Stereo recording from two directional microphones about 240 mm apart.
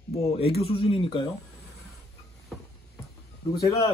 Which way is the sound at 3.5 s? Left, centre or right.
Centre.